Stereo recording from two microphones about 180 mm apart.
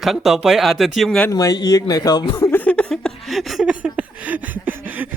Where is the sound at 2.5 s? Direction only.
10° left (ahead or behind).